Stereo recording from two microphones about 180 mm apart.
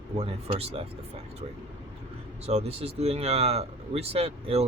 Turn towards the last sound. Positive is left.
turn(degrees=-35)  # may be behind; listen again after turning